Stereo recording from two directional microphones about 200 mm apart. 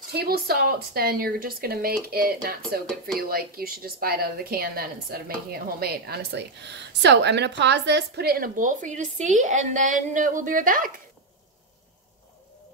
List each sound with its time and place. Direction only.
0.1 s speech: 50° right (ahead or behind)